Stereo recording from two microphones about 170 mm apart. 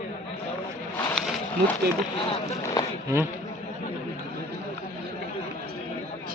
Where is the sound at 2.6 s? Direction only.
20° left (ahead or behind).